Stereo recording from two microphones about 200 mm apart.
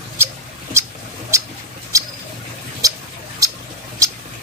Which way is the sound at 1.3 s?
15° right (ahead or behind).